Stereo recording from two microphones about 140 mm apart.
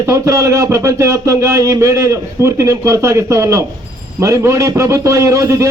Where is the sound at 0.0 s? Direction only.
20° right (ahead or behind).